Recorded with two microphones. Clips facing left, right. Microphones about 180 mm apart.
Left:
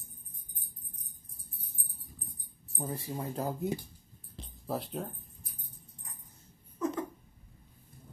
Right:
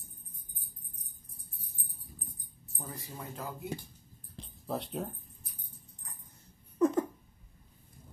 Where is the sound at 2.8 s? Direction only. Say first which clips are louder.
Left 7 dB; 30° left (ahead or behind).